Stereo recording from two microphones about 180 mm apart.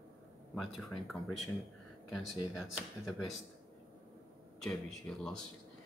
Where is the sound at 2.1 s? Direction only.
Centre (ahead or behind).